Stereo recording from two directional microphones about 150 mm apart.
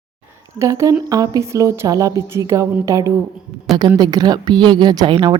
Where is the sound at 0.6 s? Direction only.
20° right (ahead or behind).